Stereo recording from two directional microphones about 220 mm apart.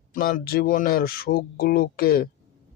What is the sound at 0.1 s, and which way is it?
Speech, 40° left (ahead or behind).